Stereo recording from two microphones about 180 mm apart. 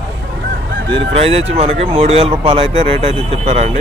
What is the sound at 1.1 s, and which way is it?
Speech, 35° right (ahead or behind).